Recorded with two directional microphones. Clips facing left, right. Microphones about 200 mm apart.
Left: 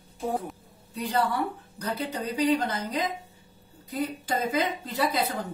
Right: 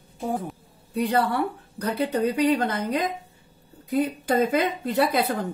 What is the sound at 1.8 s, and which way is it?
Speech, 60° right (ahead or behind).